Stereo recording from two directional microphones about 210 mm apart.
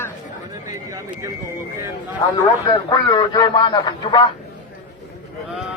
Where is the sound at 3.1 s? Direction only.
20° left (ahead or behind).